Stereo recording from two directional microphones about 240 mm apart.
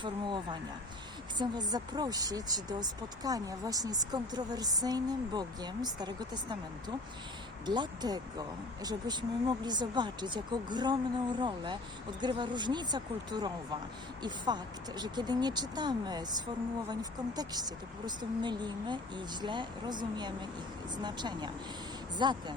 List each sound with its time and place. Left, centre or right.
0.0 s speech: centre